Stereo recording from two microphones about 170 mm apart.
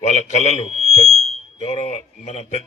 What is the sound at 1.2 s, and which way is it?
Smoke detector, 40° left (ahead or behind).